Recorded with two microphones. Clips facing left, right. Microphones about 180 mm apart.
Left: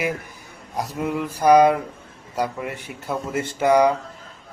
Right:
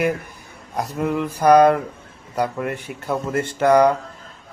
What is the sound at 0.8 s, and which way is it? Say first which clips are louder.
Speech: right 3 dB; 5° left (ahead or behind).